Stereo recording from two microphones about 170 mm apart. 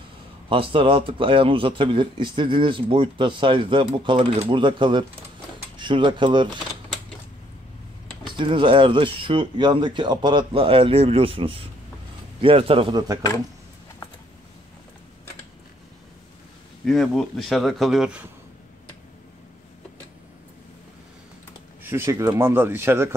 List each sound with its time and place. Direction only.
0.5 s a man's voice: 30° right (ahead or behind)
8.4 s speech: 30° right (ahead or behind)
16.8 s a man's voice: centre (ahead or behind)
21.8 s speech: 15° right (ahead or behind)